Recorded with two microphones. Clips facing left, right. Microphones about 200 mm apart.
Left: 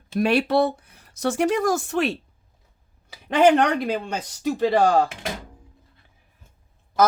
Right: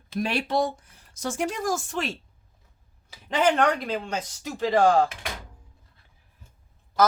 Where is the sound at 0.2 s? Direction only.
60° left (ahead or behind).